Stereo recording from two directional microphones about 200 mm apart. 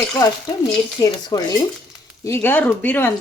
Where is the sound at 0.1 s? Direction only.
20° left (ahead or behind).